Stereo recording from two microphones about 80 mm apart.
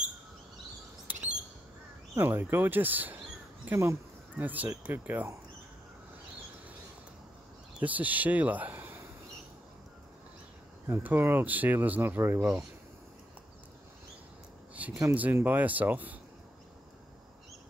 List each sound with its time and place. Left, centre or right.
2.1 s speech: right
3.6 s speech: right
4.4 s speech: centre
7.8 s speech: centre
10.9 s speech: right
12.4 s speech: centre
15.0 s speech: centre